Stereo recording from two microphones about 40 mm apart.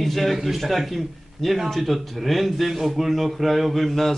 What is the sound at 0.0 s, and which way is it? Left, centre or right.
A woman's voice, centre.